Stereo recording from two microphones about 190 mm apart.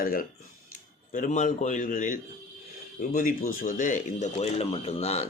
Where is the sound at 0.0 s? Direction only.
50° left (ahead or behind).